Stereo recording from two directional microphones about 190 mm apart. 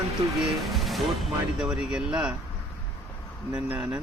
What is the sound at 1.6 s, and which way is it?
Speech, 5° right (ahead or behind).